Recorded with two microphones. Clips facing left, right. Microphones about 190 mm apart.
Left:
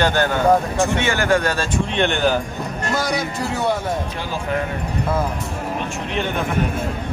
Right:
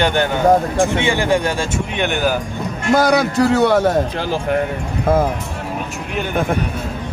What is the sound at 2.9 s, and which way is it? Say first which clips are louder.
A man's voice: right 10 dB; 65° right (ahead or behind).